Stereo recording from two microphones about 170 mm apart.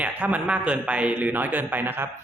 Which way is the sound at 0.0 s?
10° right (ahead or behind).